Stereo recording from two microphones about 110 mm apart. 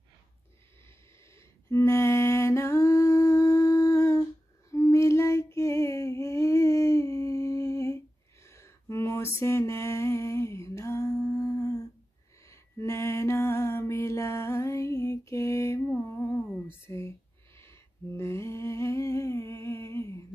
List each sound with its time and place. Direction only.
0.8 s mantra: 25° left (ahead or behind)
16.6 s whispering: 25° left (ahead or behind)
17.6 s humming: 25° left (ahead or behind)